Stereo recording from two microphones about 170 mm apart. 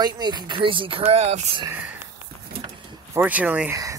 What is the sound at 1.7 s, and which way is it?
Speech, 10° right (ahead or behind).